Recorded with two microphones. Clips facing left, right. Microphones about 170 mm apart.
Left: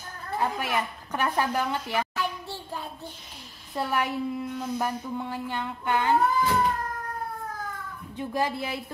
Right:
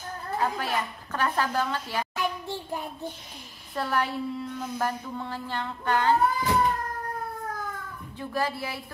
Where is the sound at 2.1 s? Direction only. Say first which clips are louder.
Right 2 dB; 15° right (ahead or behind).